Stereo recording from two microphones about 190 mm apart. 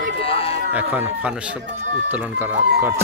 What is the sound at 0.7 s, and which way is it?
Speech, 10° right (ahead or behind).